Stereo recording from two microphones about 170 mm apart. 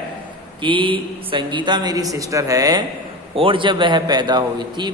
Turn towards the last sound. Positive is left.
turn(degrees=-25)  # may be behind; listen again after turning